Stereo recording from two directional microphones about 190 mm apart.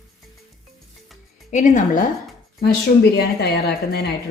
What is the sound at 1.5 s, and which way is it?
Speech, 40° left (ahead or behind).